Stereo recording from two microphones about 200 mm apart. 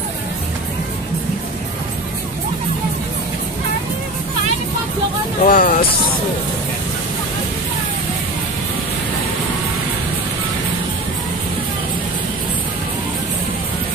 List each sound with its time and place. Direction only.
5.4 s speech: 40° left (ahead or behind)